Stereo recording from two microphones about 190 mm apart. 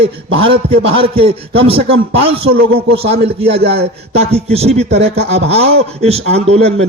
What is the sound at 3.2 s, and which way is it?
Speech, 60° right (ahead or behind).